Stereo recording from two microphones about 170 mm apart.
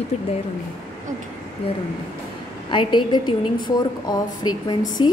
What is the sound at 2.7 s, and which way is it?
A woman's voice, 30° left (ahead or behind).